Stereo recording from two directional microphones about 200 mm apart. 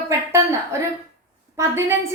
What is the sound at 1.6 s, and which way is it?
Speech, 15° right (ahead or behind).